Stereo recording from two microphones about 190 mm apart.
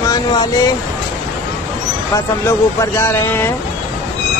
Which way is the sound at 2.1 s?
15° left (ahead or behind).